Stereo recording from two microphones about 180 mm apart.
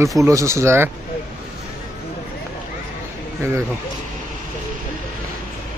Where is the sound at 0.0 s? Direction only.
15° right (ahead or behind).